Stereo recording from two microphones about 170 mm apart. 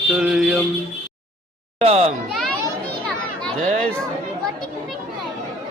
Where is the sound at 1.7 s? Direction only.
35° right (ahead or behind).